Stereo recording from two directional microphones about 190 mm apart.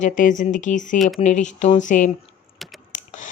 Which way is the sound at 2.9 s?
40° left (ahead or behind).